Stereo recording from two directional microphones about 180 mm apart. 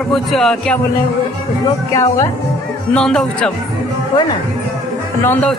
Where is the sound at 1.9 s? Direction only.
15° left (ahead or behind).